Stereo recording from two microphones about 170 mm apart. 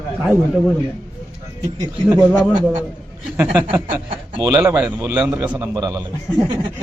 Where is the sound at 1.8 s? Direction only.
20° right (ahead or behind).